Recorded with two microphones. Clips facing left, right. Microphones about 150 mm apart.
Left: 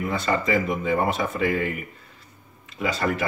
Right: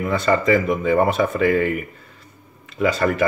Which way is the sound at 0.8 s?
60° right (ahead or behind).